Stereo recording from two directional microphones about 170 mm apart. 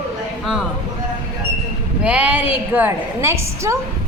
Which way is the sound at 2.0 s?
5° right (ahead or behind).